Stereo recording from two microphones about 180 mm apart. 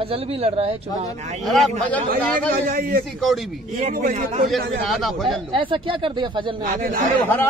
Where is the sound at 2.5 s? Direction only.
55° right (ahead or behind).